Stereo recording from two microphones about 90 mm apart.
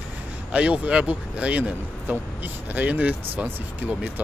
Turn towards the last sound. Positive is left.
turn(degrees=-20)  # may be behind; listen again after turning